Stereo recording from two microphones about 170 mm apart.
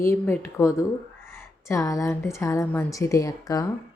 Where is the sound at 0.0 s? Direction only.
15° left (ahead or behind).